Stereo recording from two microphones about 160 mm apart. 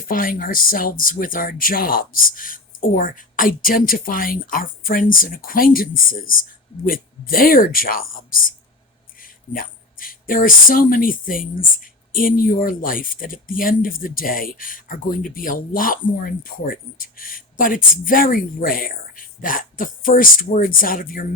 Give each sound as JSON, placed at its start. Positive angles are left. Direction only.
{"t": 0.1, "sound": "speech", "side_deg": 60}